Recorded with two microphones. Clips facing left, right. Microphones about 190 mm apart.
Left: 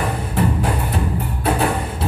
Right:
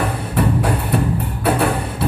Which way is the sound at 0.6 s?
65° right (ahead or behind).